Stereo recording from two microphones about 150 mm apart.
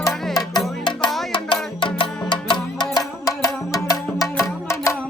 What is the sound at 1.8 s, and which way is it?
Music, 35° left (ahead or behind).